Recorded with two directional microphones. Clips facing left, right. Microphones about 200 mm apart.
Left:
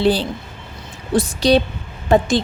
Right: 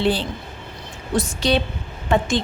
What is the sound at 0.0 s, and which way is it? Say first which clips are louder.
A woman's voice: left 4 dB; 40° left (ahead or behind).